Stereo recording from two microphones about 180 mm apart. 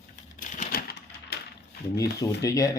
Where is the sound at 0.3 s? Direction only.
45° left (ahead or behind); by 1.4 s 65° left (ahead or behind).